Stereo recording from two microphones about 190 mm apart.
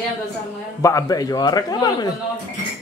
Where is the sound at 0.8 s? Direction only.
20° left (ahead or behind).